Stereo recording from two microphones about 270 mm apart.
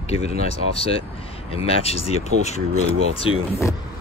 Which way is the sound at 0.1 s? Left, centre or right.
Left.